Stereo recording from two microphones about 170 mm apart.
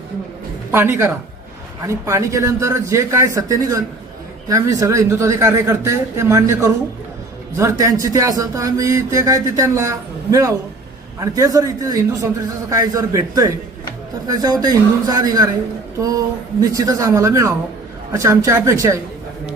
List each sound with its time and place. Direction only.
0.7 s a man's voice: 15° right (ahead or behind)